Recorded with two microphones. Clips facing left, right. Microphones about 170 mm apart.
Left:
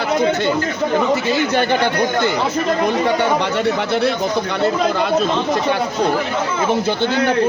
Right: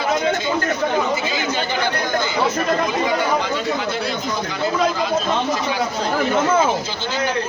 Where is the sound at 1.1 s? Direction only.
65° left (ahead or behind).